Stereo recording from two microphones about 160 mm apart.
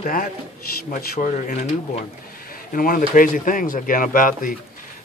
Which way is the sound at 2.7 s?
60° left (ahead or behind).